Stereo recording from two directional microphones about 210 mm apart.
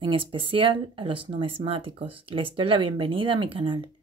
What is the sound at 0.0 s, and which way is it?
Speech, 25° right (ahead or behind).